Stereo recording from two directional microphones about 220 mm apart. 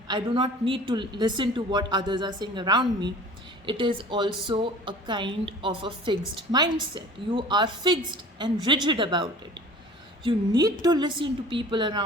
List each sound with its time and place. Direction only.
0.1 s a woman's voice: 20° right (ahead or behind)